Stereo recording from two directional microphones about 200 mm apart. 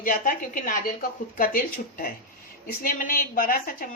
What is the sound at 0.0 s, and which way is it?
A woman's voice, 45° left (ahead or behind).